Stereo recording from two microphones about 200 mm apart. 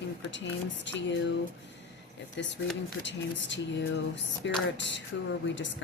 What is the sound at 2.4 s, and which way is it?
Speech, 65° left (ahead or behind).